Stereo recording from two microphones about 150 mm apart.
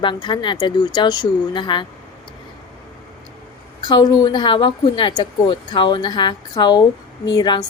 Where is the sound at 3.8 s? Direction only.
30° left (ahead or behind).